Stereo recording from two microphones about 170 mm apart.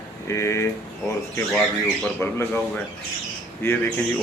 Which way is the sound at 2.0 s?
10° left (ahead or behind).